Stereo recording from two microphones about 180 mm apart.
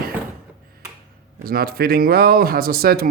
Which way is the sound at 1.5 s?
55° right (ahead or behind).